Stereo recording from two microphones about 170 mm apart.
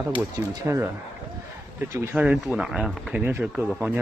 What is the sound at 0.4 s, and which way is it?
Speech, 15° right (ahead or behind).